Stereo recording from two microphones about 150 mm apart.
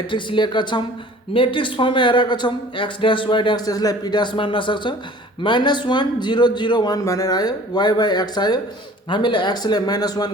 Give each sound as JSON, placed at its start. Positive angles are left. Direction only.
{"t": 0.1, "sound": "a man's voice", "side_deg": 30}